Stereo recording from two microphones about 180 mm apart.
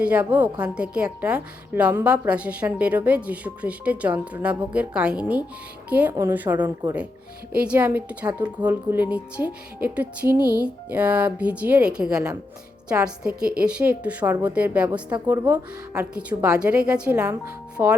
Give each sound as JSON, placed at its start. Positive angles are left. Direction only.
{"t": 0.0, "sound": "a woman's voice", "side_deg": -5}
{"t": 13.6, "sound": "a woman's voice", "side_deg": -5}